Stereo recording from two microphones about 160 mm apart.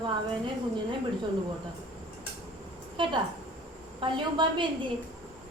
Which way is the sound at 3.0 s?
30° right (ahead or behind).